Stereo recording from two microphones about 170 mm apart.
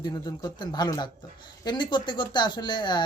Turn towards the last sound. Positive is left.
turn(degrees=25)  # may be behind; listen again after turning